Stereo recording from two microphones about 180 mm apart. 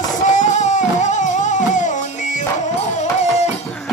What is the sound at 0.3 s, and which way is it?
Music, 40° left (ahead or behind).